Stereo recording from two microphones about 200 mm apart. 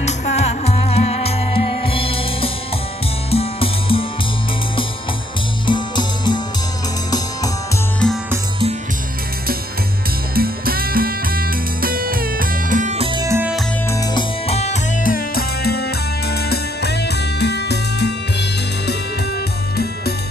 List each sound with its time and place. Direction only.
0.0 s music: 35° left (ahead or behind)
5.7 s music: 20° left (ahead or behind)
10.3 s music: 50° right (ahead or behind)
13.2 s music: 10° right (ahead or behind)
14.1 s music: 30° left (ahead or behind); by 18.1 s 55° left (ahead or behind)